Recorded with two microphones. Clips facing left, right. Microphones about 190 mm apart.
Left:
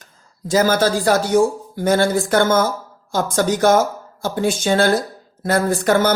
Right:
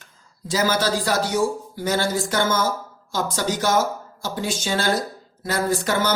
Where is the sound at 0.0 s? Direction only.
50° left (ahead or behind).